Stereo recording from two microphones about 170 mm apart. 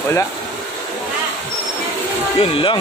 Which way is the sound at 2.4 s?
30° left (ahead or behind).